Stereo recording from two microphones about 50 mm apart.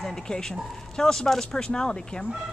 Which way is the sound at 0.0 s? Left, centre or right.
Centre.